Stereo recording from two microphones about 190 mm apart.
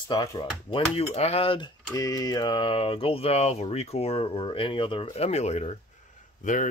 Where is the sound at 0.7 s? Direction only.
30° left (ahead or behind).